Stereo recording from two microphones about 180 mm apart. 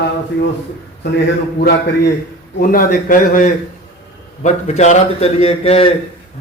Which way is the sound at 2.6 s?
50° left (ahead or behind).